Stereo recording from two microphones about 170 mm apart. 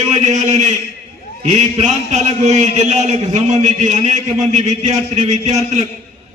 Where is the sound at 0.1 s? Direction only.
45° right (ahead or behind).